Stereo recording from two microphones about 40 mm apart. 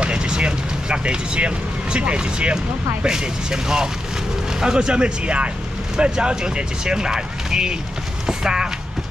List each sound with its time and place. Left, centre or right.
0.0 s speech: right